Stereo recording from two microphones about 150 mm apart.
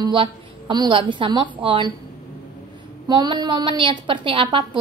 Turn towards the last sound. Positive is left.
turn(degrees=-35)  # may be behind; listen again after turning